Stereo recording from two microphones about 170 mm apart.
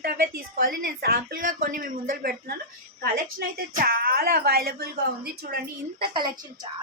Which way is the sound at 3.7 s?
60° right (ahead or behind).